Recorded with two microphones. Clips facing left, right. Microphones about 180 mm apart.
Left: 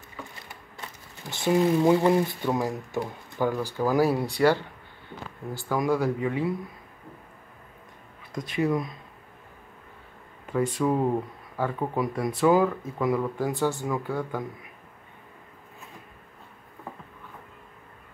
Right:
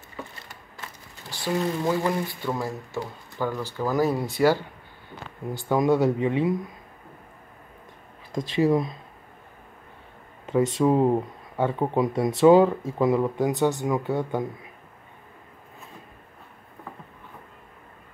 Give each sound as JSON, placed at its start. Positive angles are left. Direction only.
{"t": 1.3, "sound": "speech", "side_deg": 20}
{"t": 5.5, "sound": "speech", "side_deg": -20}
{"t": 8.3, "sound": "speech", "side_deg": -25}
{"t": 10.4, "sound": "speech", "side_deg": -20}